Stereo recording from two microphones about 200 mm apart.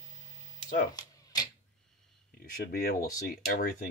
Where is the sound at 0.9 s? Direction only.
20° left (ahead or behind).